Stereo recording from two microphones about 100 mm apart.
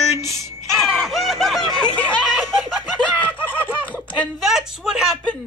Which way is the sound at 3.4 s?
15° left (ahead or behind).